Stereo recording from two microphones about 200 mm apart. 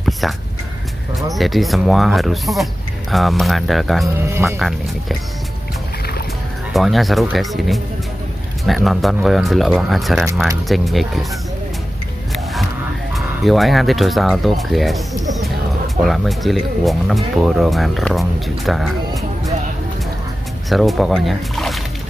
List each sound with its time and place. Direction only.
1.3 s speech: centre (ahead or behind)
4.3 s speech: 15° right (ahead or behind)
4.6 s speech: centre (ahead or behind)
6.7 s speech: centre (ahead or behind)
13.1 s speech: centre (ahead or behind)
20.7 s speech: centre (ahead or behind)